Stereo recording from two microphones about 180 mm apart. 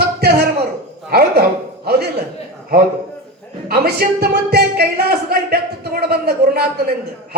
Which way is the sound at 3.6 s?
60° right (ahead or behind).